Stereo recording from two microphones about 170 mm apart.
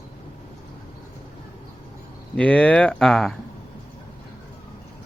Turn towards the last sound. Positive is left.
turn(degrees=0)  # may be behind; listen again after turning